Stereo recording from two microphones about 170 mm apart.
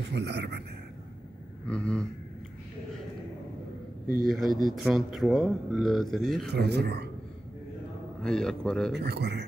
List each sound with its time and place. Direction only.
0.1 s speech: 80° right
1.7 s speech: 5° left (ahead or behind)
4.3 s speech: centre (ahead or behind)
6.5 s speech: 75° right (ahead or behind)
8.2 s speech: 5° left (ahead or behind)
8.9 s speech: 75° right (ahead or behind)